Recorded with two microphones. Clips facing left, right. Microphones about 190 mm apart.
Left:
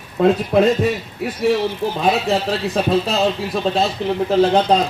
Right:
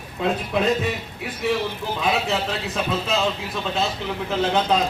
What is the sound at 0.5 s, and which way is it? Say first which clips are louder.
Speech: left 8 dB; 50° left (ahead or behind).